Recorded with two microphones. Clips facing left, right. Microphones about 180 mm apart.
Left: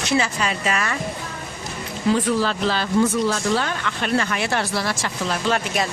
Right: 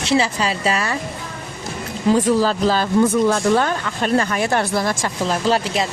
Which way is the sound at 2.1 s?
40° right (ahead or behind).